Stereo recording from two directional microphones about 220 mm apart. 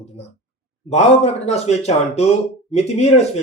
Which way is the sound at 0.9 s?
30° left (ahead or behind).